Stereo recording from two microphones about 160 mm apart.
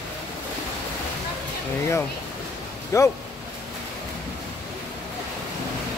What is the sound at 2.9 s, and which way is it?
Speech, 20° left (ahead or behind).